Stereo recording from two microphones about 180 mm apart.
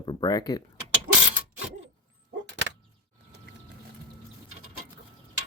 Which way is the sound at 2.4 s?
80° right.